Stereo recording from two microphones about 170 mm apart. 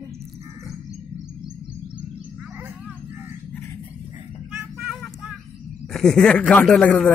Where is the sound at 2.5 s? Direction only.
10° right (ahead or behind).